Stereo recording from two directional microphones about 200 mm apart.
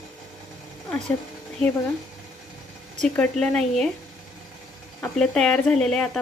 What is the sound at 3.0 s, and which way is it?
Speech, 5° left (ahead or behind).